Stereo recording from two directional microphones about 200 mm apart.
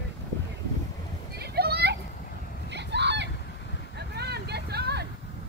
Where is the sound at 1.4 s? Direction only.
50° right (ahead or behind).